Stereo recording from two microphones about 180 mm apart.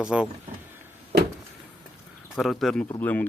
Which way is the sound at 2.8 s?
15° left (ahead or behind).